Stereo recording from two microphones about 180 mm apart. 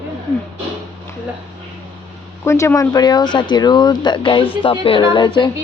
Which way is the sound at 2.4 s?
15° left (ahead or behind).